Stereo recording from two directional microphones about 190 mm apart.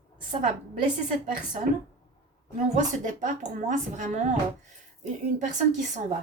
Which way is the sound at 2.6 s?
40° right (ahead or behind).